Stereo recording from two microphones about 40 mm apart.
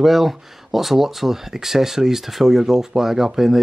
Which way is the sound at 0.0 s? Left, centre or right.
Centre.